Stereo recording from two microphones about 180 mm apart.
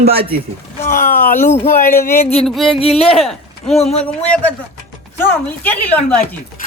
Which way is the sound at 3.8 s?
35° left (ahead or behind).